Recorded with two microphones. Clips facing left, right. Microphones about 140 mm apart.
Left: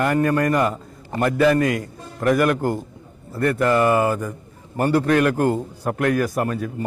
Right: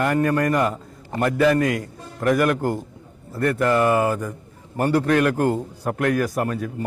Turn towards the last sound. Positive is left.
turn(degrees=20)  # may be behind; listen again after turning